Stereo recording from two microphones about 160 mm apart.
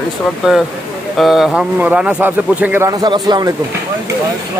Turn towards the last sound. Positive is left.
turn(degrees=-25)  # may be behind; listen again after turning